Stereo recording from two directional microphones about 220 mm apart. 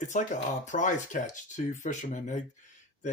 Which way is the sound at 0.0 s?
35° left (ahead or behind).